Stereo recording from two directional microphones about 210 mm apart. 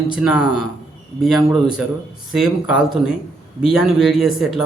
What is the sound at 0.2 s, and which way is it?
Speech, 5° right (ahead or behind).